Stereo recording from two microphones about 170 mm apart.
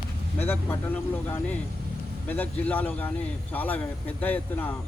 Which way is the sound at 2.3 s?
10° left (ahead or behind).